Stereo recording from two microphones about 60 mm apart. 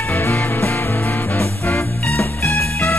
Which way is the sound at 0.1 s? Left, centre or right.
Left.